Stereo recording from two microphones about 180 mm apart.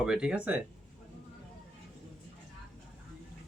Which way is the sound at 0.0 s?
5° right (ahead or behind).